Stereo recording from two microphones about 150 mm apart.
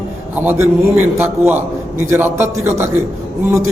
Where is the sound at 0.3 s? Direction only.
10° right (ahead or behind).